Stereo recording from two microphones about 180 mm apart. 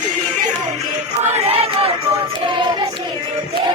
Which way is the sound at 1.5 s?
35° right (ahead or behind).